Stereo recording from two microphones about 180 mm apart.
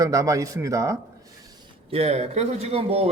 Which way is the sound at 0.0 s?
20° right (ahead or behind).